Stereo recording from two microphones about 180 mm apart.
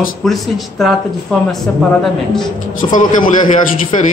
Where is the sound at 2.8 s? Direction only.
35° left (ahead or behind).